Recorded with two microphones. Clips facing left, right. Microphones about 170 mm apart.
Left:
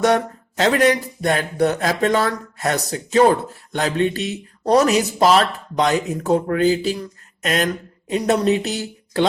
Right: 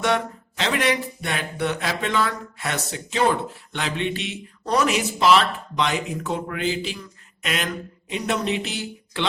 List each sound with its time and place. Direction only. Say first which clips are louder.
0.0 s speech: left 6 dB; 40° left (ahead or behind)